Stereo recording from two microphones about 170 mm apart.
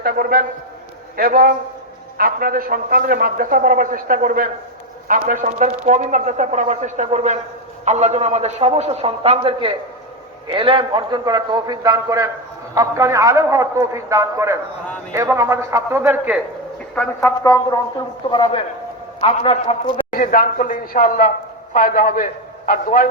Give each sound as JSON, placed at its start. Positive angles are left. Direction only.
{"t": 0.0, "sound": "a man's voice", "side_deg": -60}
{"t": 17.2, "sound": "a man's voice", "side_deg": 20}
{"t": 20.1, "sound": "speech", "side_deg": 55}